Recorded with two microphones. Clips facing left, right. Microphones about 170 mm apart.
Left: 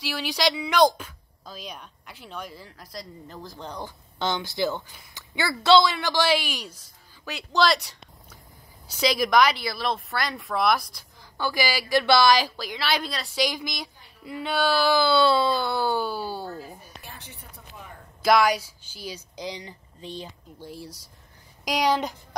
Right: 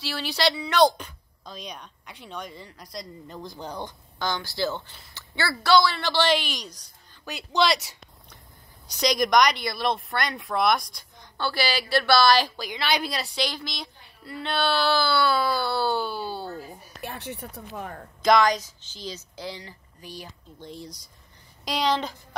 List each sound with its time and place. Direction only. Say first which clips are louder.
0.0 s a woman's voice: even; 10° left (ahead or behind); by 3.8 s 5° right (ahead or behind)
4.2 s a woman's voice: left 2 dB; 20° left (ahead or behind)
5.9 s a woman's voice: even; 10° left (ahead or behind)
12.5 s a woman's voice: even; centre (ahead or behind)
13.0 s a woman's voice: right 3 dB; 10° right (ahead or behind)
13.3 s a woman's voice: left 3 dB; 10° left (ahead or behind)
17.0 s speech: right 10 dB; 65° right (ahead or behind)
18.2 s a woman's voice: even; 10° left (ahead or behind)
20.6 s a woman's voice: even; 5° left (ahead or behind)